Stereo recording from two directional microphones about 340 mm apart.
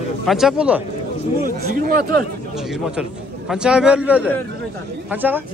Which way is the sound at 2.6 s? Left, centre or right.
Centre.